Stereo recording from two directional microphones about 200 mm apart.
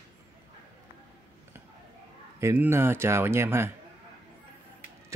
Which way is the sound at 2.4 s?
10° right (ahead or behind).